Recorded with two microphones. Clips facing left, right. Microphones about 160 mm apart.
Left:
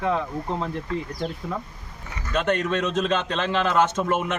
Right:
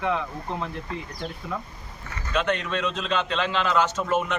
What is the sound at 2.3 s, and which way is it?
A man's voice, 45° left (ahead or behind).